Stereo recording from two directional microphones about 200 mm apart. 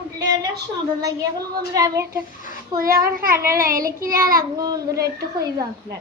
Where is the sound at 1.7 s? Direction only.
15° right (ahead or behind).